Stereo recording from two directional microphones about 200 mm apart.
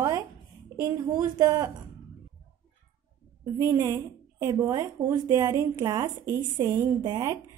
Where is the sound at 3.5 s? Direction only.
15° right (ahead or behind).